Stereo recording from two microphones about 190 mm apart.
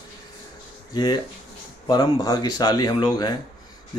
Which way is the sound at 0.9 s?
25° left (ahead or behind).